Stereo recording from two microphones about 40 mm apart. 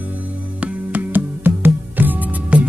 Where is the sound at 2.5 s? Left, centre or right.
Right.